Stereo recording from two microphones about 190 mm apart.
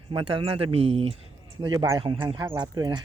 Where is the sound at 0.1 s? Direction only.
25° right (ahead or behind).